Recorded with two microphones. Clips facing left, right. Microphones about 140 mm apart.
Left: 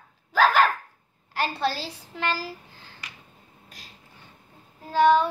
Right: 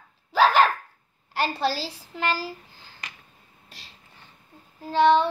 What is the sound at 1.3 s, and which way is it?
A woman's voice, 35° right (ahead or behind).